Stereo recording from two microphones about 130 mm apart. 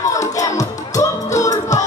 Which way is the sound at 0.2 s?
25° left (ahead or behind).